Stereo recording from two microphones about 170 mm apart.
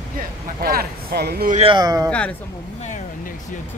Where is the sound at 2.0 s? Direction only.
5° left (ahead or behind).